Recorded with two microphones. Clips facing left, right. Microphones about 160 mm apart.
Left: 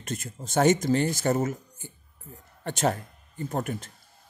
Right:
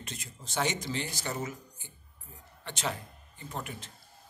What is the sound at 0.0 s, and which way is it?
A man's voice, 50° left (ahead or behind).